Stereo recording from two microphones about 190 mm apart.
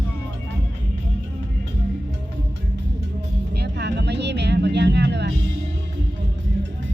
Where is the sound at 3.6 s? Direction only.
65° right (ahead or behind).